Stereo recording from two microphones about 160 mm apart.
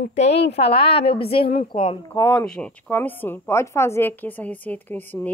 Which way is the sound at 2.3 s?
10° left (ahead or behind).